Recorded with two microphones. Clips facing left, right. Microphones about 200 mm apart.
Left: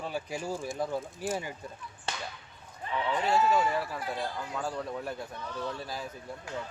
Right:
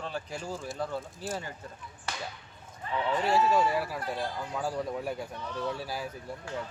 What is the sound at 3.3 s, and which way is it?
Speech, 10° right (ahead or behind).